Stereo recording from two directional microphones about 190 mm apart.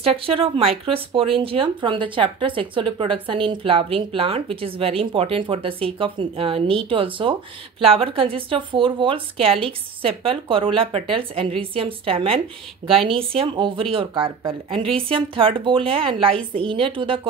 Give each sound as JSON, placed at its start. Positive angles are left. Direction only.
{"t": 0.0, "sound": "speech", "side_deg": -30}